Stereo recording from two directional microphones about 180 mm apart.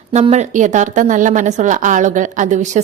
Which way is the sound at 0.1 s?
40° right (ahead or behind).